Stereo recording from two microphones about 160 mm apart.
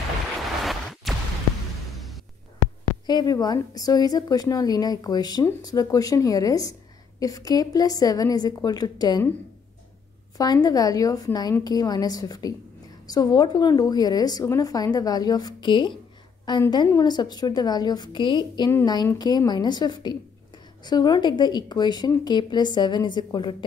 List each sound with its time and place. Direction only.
0.4 s a sound: centre (ahead or behind)
3.1 s a woman's voice: 25° left (ahead or behind)
10.3 s a woman's voice: 25° left (ahead or behind)